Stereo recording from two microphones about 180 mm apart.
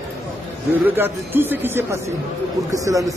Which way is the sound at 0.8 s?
10° right (ahead or behind).